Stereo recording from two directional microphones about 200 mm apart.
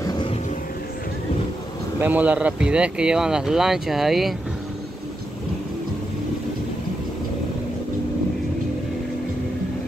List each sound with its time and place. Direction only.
0.0 s vehicle: 25° left (ahead or behind)
2.0 s speech: 10° right (ahead or behind)